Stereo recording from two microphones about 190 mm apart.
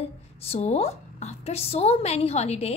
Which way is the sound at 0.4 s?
30° left (ahead or behind).